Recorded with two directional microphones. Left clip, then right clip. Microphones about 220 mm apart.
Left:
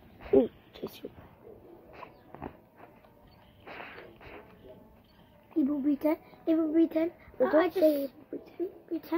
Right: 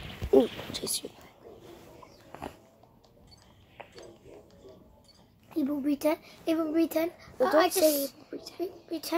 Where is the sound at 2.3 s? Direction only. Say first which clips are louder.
Right 3 dB; 20° left (ahead or behind).